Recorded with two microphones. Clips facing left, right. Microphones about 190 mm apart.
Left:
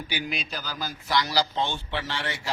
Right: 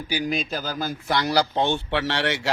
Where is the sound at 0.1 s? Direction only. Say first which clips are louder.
Right 9 dB; 40° right (ahead or behind).